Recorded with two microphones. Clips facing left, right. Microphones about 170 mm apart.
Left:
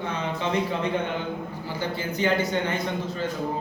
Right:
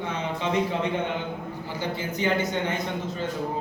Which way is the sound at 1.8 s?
20° right (ahead or behind).